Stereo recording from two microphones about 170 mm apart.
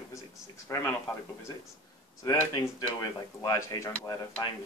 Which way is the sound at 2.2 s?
20° left (ahead or behind).